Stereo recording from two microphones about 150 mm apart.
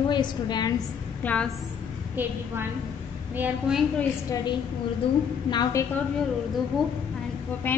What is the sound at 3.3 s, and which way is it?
Speech, 10° right (ahead or behind).